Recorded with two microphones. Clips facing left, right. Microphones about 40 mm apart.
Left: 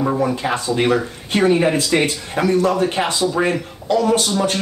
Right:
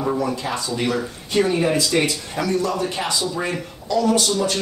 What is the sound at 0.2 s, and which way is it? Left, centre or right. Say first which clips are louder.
Speech: left 4 dB; left.